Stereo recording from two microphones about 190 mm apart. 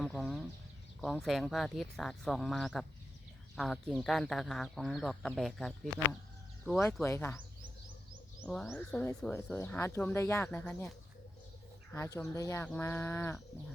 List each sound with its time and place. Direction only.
0.0 s chicken: centre (ahead or behind)
1.0 s speech: centre (ahead or behind)
8.4 s speech: 5° left (ahead or behind)
11.9 s speech: 15° left (ahead or behind)